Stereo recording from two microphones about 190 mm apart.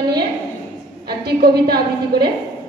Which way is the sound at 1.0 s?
55° right (ahead or behind).